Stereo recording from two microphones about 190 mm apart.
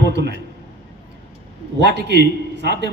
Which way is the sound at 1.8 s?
60° right (ahead or behind).